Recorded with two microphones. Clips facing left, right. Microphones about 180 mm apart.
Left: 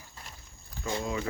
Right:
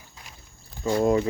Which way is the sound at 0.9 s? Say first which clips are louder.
Right 11 dB; 50° right (ahead or behind).